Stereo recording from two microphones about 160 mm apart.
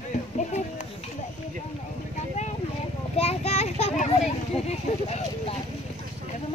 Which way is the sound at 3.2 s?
40° left (ahead or behind).